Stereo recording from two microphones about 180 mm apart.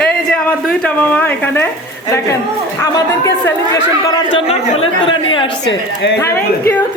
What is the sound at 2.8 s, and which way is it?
Speech, 20° left (ahead or behind).